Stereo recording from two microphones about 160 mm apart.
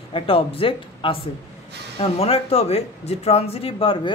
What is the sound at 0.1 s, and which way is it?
Speech, 35° left (ahead or behind).